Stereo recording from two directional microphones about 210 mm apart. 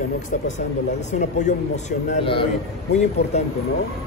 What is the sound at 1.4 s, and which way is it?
A man's voice, 30° left (ahead or behind).